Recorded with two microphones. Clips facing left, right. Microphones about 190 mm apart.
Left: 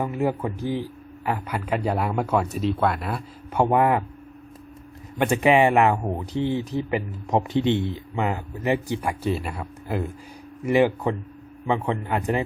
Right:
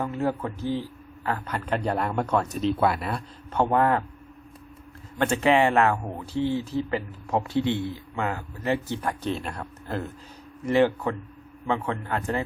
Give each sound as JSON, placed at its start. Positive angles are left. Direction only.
{"t": 0.0, "sound": "speech", "side_deg": 15}
{"t": 5.1, "sound": "speech", "side_deg": 15}